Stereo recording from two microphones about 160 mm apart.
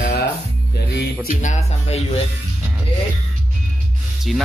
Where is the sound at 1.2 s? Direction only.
50° left (ahead or behind).